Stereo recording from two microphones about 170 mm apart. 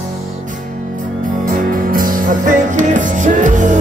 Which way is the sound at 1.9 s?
55° right (ahead or behind).